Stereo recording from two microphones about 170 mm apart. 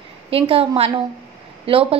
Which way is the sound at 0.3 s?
35° right (ahead or behind).